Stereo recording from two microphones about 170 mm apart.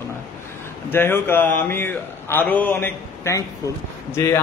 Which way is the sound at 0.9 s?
15° left (ahead or behind).